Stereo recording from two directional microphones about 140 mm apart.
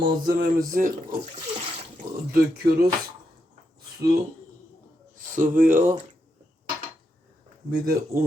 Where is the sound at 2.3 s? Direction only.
90° right.